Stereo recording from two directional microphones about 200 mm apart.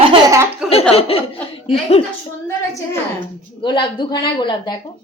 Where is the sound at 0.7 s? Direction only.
30° left (ahead or behind).